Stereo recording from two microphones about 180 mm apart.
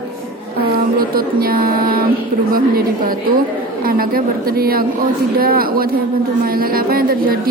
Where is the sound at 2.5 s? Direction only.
55° right (ahead or behind).